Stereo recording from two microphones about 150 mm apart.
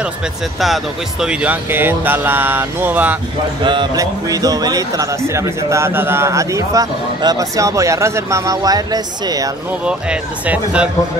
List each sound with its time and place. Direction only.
1.2 s speech: 10° right (ahead or behind)
3.6 s a man's voice: 25° right (ahead or behind)
9.7 s speech: 10° right (ahead or behind)